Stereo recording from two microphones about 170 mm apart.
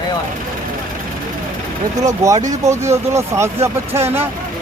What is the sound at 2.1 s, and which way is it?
Speech, 20° right (ahead or behind).